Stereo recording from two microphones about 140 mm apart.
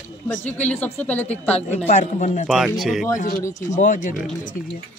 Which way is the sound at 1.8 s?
60° left (ahead or behind).